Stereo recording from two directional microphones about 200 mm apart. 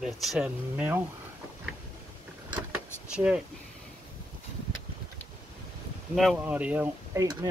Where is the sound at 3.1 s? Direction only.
5° right (ahead or behind).